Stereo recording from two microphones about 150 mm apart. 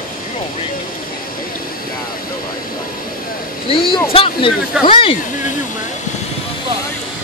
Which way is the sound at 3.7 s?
35° left (ahead or behind).